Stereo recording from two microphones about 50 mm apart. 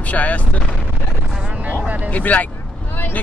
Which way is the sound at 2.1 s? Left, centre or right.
Left.